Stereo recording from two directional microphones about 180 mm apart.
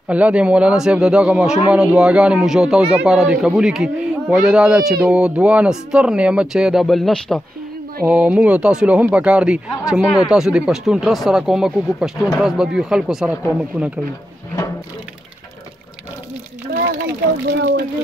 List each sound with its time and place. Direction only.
0.1 s speech: 5° right (ahead or behind)
17.5 s speech: 75° right (ahead or behind)